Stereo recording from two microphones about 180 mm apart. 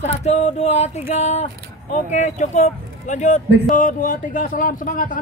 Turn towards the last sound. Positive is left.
turn(degrees=50)  # may be behind; listen again after turning